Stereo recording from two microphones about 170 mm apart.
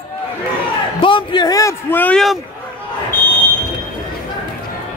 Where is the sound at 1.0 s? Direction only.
30° left (ahead or behind); by 2.3 s 5° left (ahead or behind).